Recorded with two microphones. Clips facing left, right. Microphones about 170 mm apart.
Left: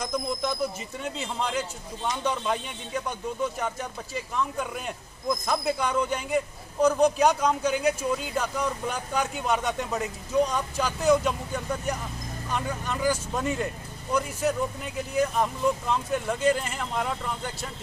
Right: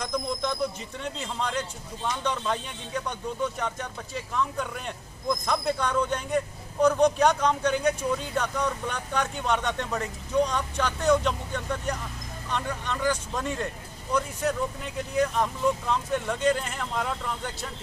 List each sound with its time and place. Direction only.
0.0 s a man's voice: 5° left (ahead or behind)